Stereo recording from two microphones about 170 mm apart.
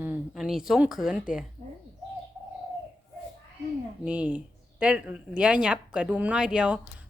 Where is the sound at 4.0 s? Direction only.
10° right (ahead or behind).